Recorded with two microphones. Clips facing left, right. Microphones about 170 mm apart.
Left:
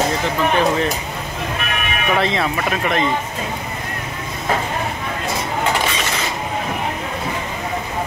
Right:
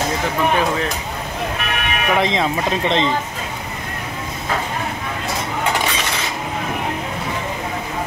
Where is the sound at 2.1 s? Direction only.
20° right (ahead or behind).